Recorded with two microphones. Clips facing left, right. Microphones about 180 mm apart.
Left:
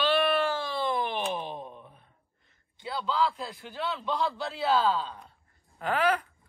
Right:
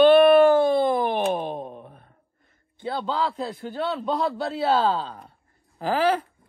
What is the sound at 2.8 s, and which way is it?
A man's voice, 40° right (ahead or behind).